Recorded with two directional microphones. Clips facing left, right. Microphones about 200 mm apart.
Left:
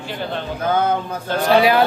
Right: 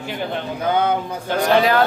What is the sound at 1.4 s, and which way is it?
Speech, 10° left (ahead or behind).